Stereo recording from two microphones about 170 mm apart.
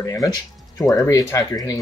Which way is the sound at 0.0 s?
20° left (ahead or behind).